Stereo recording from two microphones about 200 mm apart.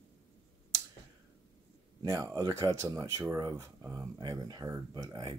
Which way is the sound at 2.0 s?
15° right (ahead or behind).